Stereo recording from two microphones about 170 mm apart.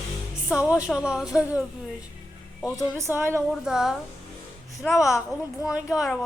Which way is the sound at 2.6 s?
Centre (ahead or behind).